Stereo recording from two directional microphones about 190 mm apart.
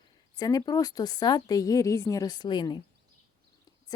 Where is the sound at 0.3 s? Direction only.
20° left (ahead or behind).